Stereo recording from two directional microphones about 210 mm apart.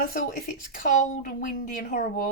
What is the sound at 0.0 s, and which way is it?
Speech, 40° left (ahead or behind).